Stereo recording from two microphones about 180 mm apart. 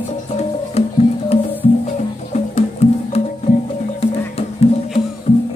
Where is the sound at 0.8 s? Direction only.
35° left (ahead or behind).